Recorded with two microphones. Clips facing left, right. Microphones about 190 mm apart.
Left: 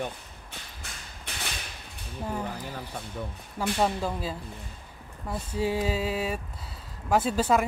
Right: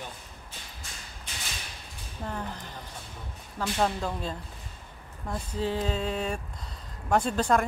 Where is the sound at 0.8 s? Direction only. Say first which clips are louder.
Left 2 dB; 65° left (ahead or behind).